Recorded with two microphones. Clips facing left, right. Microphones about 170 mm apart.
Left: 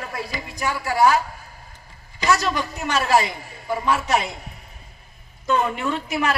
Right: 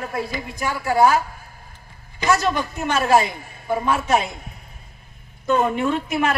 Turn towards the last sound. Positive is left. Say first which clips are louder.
# right 2 dB
turn(degrees=-50)  # may be behind; listen again after turning